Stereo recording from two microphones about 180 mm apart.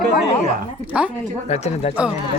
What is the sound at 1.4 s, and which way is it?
Speech, 35° left (ahead or behind).